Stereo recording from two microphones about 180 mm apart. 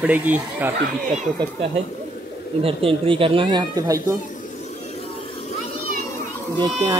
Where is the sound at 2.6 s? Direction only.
30° right (ahead or behind).